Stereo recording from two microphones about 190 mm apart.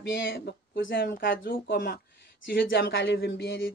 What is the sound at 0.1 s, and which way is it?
Speech, 60° left (ahead or behind).